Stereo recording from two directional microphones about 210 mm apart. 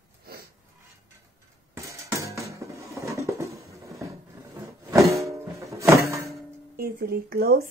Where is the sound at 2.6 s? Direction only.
15° right (ahead or behind).